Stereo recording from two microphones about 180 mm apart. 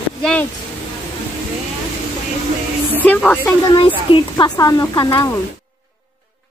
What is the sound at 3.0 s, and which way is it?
Speech, 10° left (ahead or behind).